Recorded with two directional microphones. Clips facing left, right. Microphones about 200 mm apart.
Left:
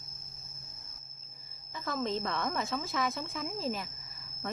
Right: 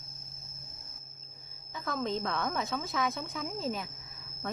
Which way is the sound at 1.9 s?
Centre (ahead or behind).